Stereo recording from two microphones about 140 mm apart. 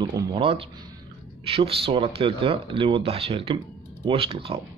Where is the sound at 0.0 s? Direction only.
30° right (ahead or behind).